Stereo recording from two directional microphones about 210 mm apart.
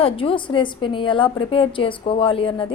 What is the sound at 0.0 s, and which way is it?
A woman's voice, 25° left (ahead or behind).